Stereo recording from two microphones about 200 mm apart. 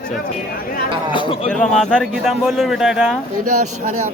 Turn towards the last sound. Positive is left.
turn(degrees=-35)  # may be behind; listen again after turning